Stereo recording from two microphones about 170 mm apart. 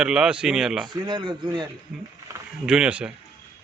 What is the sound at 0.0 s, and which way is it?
Speech, 5° right (ahead or behind).